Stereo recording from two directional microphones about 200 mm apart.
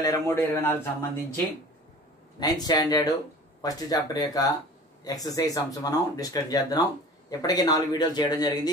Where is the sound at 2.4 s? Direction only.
20° left (ahead or behind).